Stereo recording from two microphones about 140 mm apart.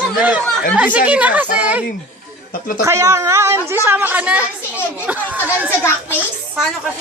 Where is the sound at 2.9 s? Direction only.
20° right (ahead or behind).